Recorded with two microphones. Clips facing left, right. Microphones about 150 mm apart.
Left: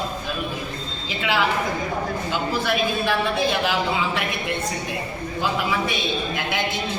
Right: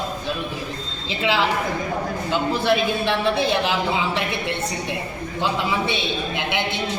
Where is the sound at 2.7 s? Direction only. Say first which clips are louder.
Right 3 dB; 25° right (ahead or behind).